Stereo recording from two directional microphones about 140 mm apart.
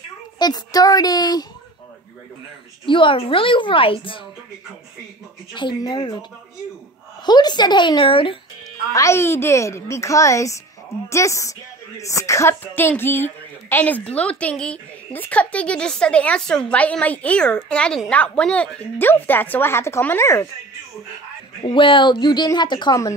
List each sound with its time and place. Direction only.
0.4 s a child's voice: 30° left (ahead or behind)
2.8 s a woman's voice: 35° left (ahead or behind)
5.5 s a woman's voice: 35° left (ahead or behind)
7.2 s a woman's voice: 30° left (ahead or behind)
8.9 s a child's voice: 20° left (ahead or behind)
21.6 s a woman's voice: 35° left (ahead or behind)